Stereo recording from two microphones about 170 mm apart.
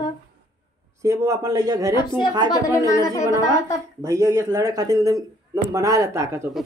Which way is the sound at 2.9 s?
20° left (ahead or behind).